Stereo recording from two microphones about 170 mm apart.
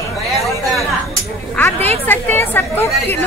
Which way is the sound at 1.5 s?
10° left (ahead or behind).